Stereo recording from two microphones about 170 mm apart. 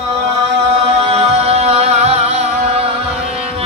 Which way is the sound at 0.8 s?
35° right (ahead or behind).